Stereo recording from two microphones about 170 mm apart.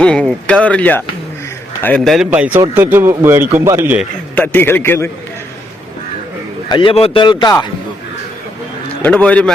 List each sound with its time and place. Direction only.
0.0 s speech: 5° left (ahead or behind)
2.1 s a man's voice: 10° right (ahead or behind)
4.4 s speech: 10° left (ahead or behind)
6.7 s speech: 30° left (ahead or behind)
9.0 s speech: 10° left (ahead or behind)